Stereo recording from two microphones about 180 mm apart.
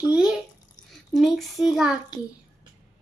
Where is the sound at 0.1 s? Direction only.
5° right (ahead or behind).